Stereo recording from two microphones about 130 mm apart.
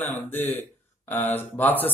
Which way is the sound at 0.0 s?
15° left (ahead or behind).